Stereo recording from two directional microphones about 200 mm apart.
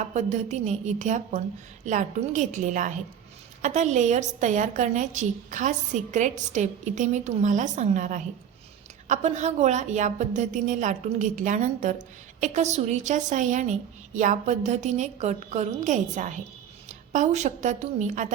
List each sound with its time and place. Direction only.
0.0 s a woman's voice: 35° right (ahead or behind)